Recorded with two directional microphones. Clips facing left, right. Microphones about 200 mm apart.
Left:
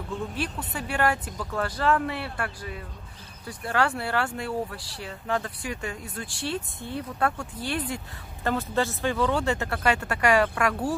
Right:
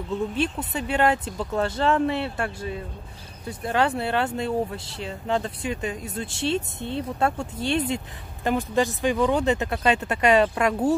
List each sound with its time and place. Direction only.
0.4 s speech: 20° right (ahead or behind)